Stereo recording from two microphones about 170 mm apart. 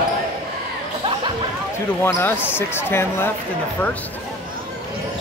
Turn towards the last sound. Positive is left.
turn(degrees=15)  # may be behind; listen again after turning